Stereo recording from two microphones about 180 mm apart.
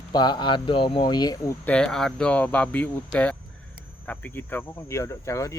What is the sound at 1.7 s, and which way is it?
Speech, 5° left (ahead or behind).